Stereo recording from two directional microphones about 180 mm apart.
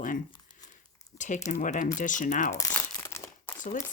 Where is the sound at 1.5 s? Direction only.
45° left (ahead or behind).